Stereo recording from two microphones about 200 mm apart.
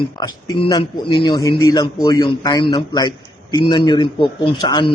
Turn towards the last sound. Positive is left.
turn(degrees=20)  # may be behind; listen again after turning